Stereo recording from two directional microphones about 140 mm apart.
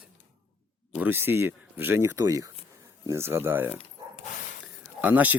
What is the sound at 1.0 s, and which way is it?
Speech, 15° right (ahead or behind).